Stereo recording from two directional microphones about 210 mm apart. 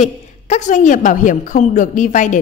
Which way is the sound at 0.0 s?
35° left (ahead or behind).